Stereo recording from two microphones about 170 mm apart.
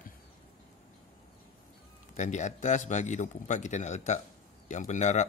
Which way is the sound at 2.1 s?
45° left (ahead or behind).